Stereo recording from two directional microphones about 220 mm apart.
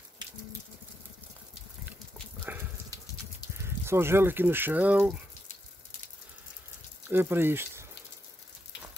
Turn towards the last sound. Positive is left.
turn(degrees=-10)  # may be behind; listen again after turning